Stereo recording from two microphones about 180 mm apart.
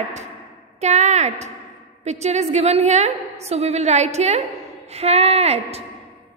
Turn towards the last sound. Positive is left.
turn(degrees=-35)  # may be behind; listen again after turning